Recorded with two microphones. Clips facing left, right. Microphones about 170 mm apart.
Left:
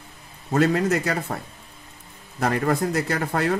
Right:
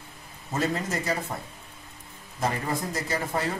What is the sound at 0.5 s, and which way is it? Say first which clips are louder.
Speech: left 8 dB; 70° left (ahead or behind).